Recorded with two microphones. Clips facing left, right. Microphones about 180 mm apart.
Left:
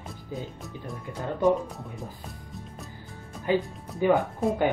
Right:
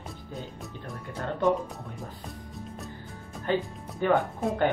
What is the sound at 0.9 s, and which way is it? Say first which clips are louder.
Speech: left 1 dB; centre (ahead or behind).